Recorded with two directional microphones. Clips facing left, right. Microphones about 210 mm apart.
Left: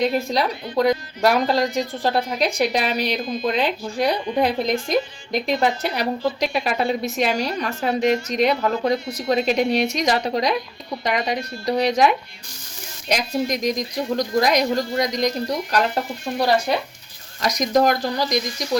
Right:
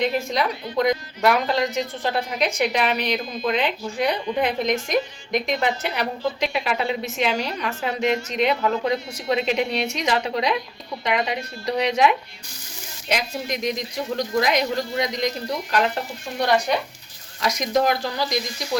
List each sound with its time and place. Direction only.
0.0 s speech: 35° left (ahead or behind)
17.4 s speech: 40° left (ahead or behind)